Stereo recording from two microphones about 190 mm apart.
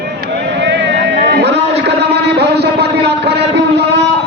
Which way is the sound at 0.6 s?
65° right (ahead or behind).